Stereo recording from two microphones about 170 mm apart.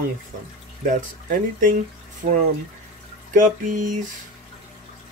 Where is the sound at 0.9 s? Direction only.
50° right (ahead or behind).